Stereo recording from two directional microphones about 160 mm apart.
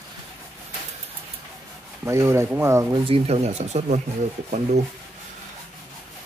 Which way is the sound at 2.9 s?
35° right (ahead or behind).